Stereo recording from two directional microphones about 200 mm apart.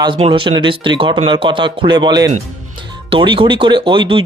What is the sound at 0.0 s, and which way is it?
Speech, 25° right (ahead or behind).